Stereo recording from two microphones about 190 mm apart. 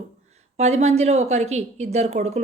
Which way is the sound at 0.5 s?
35° right (ahead or behind).